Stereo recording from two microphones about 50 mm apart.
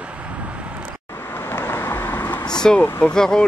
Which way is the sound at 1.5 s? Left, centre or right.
Left.